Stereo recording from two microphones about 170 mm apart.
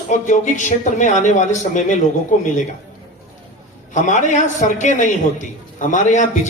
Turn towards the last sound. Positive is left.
turn(degrees=45)  # may be behind; listen again after turning